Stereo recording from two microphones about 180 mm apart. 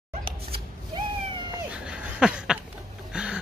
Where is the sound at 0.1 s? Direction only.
30° right (ahead or behind).